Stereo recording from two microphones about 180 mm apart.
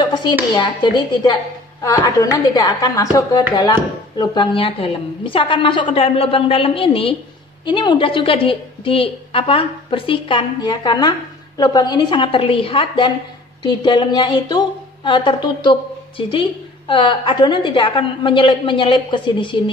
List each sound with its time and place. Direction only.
0.0 s a woman's voice: 25° left (ahead or behind)